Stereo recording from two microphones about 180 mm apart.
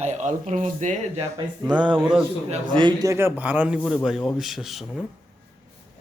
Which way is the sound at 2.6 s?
25° right (ahead or behind).